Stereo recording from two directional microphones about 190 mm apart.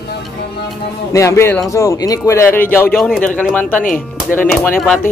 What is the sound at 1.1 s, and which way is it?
Speech, 15° left (ahead or behind).